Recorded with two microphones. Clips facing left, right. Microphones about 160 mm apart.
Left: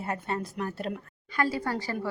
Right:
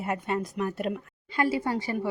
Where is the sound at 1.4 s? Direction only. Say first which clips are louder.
Right 2 dB; 25° right (ahead or behind).